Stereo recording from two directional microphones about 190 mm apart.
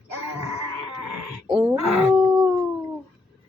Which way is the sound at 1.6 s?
10° right (ahead or behind).